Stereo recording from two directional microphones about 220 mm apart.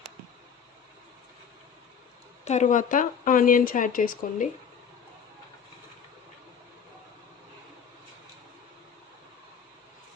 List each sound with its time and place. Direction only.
2.4 s speech: 30° left (ahead or behind)